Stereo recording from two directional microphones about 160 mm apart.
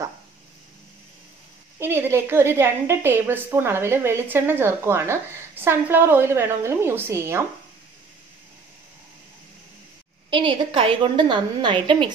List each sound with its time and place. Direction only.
1.8 s a woman's voice: 15° right (ahead or behind)
10.3 s a woman's voice: 30° right (ahead or behind)